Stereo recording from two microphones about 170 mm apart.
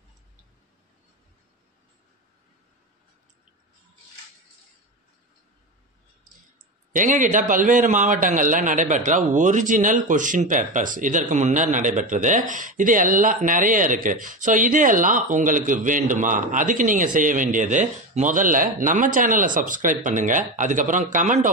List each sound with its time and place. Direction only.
6.9 s a man's voice: 50° right (ahead or behind)